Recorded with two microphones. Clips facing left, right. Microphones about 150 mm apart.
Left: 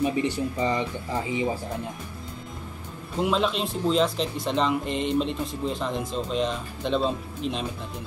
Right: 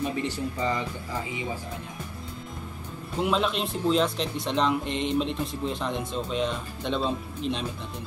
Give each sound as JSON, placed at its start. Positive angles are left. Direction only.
{"t": 0.0, "sound": "speech", "side_deg": 20}
{"t": 3.2, "sound": "speech", "side_deg": 0}